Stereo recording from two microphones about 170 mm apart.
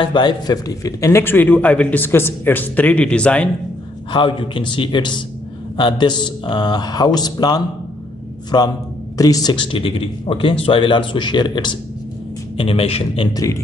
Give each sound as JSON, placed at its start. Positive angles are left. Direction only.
{"t": 0.0, "sound": "a man's voice", "side_deg": 25}
{"t": 4.1, "sound": "a man's voice", "side_deg": 30}